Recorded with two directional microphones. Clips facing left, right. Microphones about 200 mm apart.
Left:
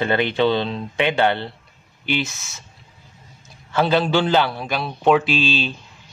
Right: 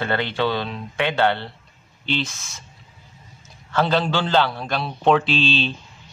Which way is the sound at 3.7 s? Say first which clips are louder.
Left 2 dB; 10° left (ahead or behind).